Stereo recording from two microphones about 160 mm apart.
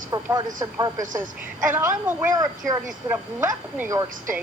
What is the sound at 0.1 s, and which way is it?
A woman's voice, 20° right (ahead or behind).